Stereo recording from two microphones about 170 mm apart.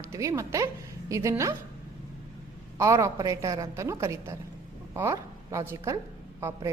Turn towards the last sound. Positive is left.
turn(degrees=-15)  # may be behind; listen again after turning